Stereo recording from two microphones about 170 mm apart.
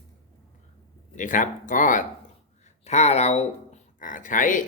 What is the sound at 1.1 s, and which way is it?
Speech, 50° left (ahead or behind).